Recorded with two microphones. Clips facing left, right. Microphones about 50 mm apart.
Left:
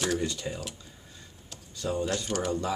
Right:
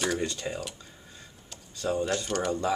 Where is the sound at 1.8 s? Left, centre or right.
Centre.